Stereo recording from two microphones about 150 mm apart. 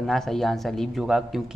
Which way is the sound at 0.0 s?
Centre (ahead or behind).